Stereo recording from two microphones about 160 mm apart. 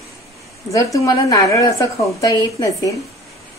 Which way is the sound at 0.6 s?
20° left (ahead or behind).